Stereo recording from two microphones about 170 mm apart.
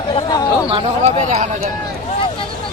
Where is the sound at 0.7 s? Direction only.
35° right (ahead or behind).